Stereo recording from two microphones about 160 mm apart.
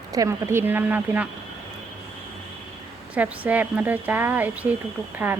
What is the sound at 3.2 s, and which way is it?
Speech, 10° right (ahead or behind).